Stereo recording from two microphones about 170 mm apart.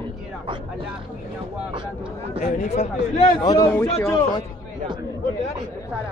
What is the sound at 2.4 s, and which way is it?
Speech, 40° left (ahead or behind).